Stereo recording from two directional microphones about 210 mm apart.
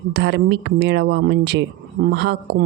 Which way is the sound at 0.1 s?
55° right (ahead or behind).